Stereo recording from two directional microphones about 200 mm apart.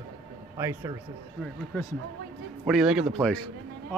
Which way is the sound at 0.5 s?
15° right (ahead or behind).